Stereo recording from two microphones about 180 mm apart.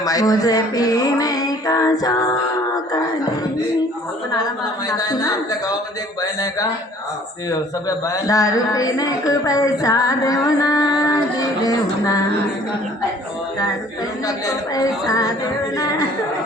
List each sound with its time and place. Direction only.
0.0 s a sound: 20° left (ahead or behind)
4.9 s a man's voice: 20° left (ahead or behind)
14.3 s a man's voice: 20° left (ahead or behind)